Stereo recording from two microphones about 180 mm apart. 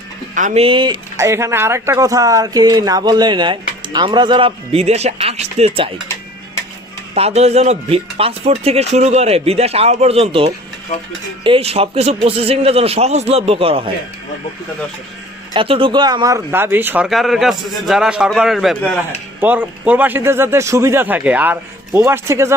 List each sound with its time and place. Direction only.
0.3 s speech: 45° right (ahead or behind)
0.6 s speech: 25° right (ahead or behind)
1.2 s speech: 15° right (ahead or behind); by 5.9 s 30° right (ahead or behind)
7.1 s speech: 35° right (ahead or behind)
15.5 s speech: 30° right (ahead or behind); by 18.9 s centre (ahead or behind)
19.4 s a man's voice: 10° right (ahead or behind)